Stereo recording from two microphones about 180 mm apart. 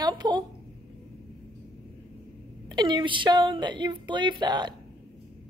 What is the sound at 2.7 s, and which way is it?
Speech, 25° right (ahead or behind).